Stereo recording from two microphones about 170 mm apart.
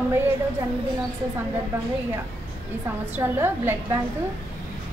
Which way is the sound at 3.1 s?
15° right (ahead or behind).